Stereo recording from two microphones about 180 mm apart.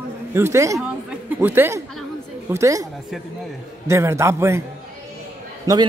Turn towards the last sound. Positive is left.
turn(degrees=-20)  # may be behind; listen again after turning